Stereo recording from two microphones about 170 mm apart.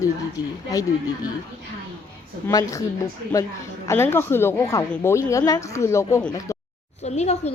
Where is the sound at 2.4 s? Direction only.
20° left (ahead or behind).